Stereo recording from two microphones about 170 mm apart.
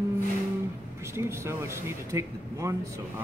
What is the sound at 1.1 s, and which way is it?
Speech, 15° right (ahead or behind).